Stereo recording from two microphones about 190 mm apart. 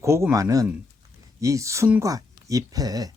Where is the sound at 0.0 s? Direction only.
15° right (ahead or behind).